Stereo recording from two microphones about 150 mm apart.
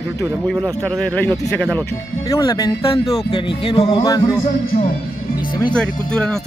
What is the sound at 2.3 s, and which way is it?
Speech, 25° left (ahead or behind).